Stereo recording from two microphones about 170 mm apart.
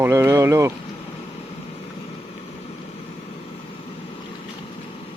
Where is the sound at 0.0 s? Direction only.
15° right (ahead or behind).